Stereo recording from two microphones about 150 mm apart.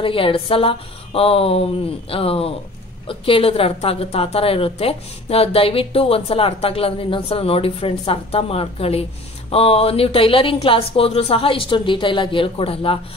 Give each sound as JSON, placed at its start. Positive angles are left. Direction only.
{"t": 0.0, "sound": "a woman's voice", "side_deg": 35}